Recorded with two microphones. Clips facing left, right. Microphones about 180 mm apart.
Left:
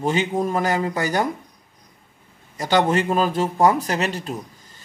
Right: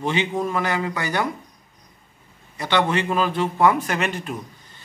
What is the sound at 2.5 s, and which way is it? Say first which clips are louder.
Speech: left 3 dB; 45° left (ahead or behind).